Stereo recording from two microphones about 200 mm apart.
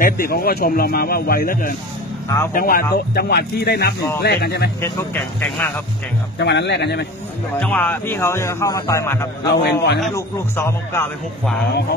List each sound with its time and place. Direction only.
0.0 s a man's voice: 45° left (ahead or behind)
4.8 s speech: 10° left (ahead or behind)
6.3 s a man's voice: 60° left (ahead or behind)
7.5 s speech: 10° left (ahead or behind)
9.5 s a man's voice: 60° left (ahead or behind)
10.1 s speech: 15° left (ahead or behind)